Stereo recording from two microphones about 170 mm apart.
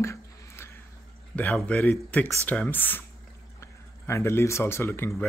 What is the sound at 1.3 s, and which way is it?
Speech, 5° left (ahead or behind).